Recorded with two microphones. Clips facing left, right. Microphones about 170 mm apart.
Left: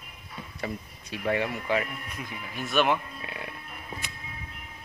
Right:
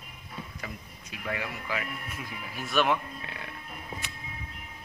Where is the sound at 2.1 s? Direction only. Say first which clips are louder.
Left 2 dB; 5° right (ahead or behind).